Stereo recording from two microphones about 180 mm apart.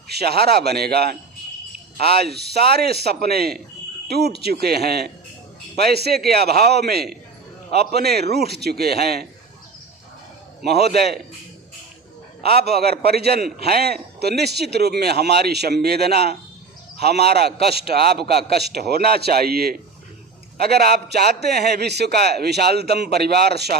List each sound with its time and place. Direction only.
0.1 s a man's voice: 65° right (ahead or behind)
4.6 s a man's voice: 60° right (ahead or behind)
10.7 s a man's voice: 65° right (ahead or behind)
12.5 s a man's voice: 60° right (ahead or behind)